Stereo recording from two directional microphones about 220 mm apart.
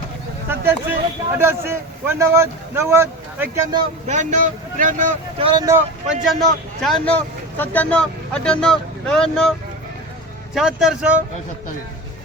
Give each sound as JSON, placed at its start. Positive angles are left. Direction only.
{"t": 0.4, "sound": "a sound", "side_deg": -10}
{"t": 1.4, "sound": "a man's voice", "side_deg": -10}
{"t": 4.0, "sound": "speech", "side_deg": -35}
{"t": 5.5, "sound": "a man's voice", "side_deg": -15}
{"t": 6.2, "sound": "speech", "side_deg": 0}